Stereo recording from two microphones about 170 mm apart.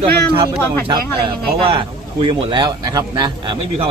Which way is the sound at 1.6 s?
30° right (ahead or behind).